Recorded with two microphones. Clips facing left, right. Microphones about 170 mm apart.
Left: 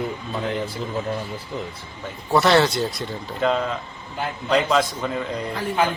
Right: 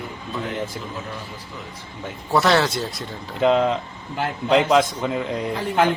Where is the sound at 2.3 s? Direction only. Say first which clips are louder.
Left 1 dB; centre (ahead or behind).